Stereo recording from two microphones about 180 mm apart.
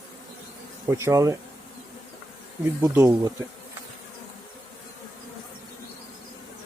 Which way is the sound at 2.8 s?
15° right (ahead or behind).